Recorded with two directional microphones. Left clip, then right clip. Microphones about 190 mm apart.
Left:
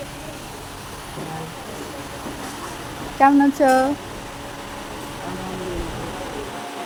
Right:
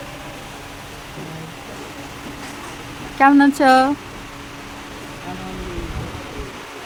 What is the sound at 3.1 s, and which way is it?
Speech, 45° right (ahead or behind).